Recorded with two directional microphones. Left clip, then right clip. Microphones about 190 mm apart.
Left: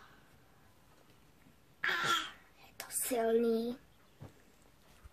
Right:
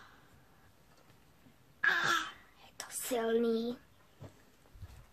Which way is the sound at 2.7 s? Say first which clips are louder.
Even; 15° left (ahead or behind).